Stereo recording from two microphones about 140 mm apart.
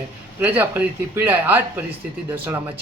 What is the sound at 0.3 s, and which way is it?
Speech, 10° right (ahead or behind).